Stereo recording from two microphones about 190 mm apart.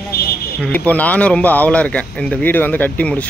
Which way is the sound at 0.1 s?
55° left (ahead or behind).